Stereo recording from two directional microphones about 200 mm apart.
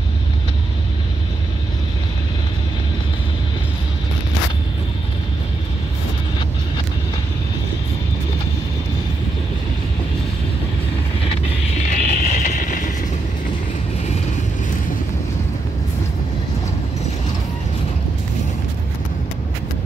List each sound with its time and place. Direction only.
11.9 s vehicle: 45° left (ahead or behind)